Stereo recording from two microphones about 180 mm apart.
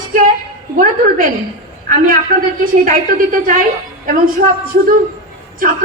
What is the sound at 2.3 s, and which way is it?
Speech, 50° right (ahead or behind).